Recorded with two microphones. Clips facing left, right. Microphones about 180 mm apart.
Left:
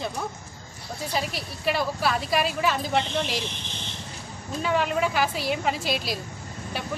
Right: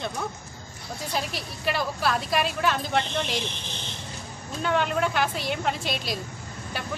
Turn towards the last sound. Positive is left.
turn(degrees=0)  # may be behind; listen again after turning